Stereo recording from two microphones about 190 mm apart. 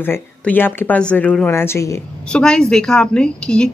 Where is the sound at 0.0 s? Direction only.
10° left (ahead or behind).